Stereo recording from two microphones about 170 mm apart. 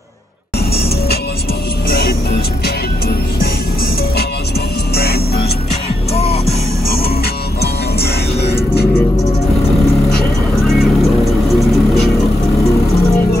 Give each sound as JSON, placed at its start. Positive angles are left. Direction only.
{"t": 1.9, "sound": "music", "side_deg": 65}
{"t": 4.9, "sound": "music", "side_deg": 70}
{"t": 6.1, "sound": "music", "side_deg": 35}
{"t": 7.6, "sound": "music", "side_deg": 70}
{"t": 10.8, "sound": "vehicle", "side_deg": 0}